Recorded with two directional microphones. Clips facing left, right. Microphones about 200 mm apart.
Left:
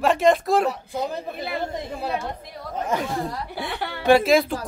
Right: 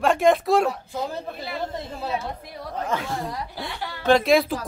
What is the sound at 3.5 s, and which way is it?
Speech, 65° left (ahead or behind).